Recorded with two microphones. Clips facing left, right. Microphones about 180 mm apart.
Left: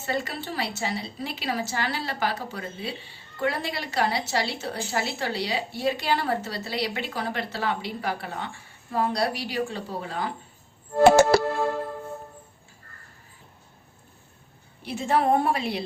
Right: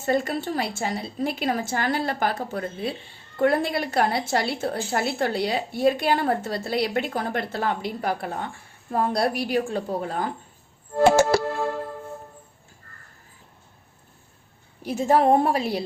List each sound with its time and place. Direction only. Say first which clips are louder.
0.0 s a woman's voice: right 6 dB; 50° right (ahead or behind)
11.0 s music: left 1 dB; 65° left (ahead or behind)
14.8 s a woman's voice: right 4 dB; 45° right (ahead or behind)